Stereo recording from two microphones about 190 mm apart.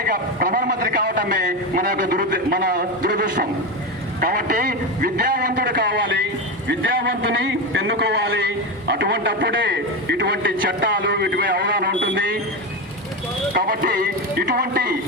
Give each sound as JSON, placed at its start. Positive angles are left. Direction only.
{"t": 0.0, "sound": "a man's voice", "side_deg": -50}
{"t": 2.3, "sound": "a man's voice", "side_deg": -55}
{"t": 6.7, "sound": "a man's voice", "side_deg": -75}
{"t": 13.5, "sound": "a man's voice", "side_deg": -50}